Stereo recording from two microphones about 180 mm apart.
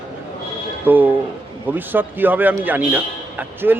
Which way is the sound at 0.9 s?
10° right (ahead or behind).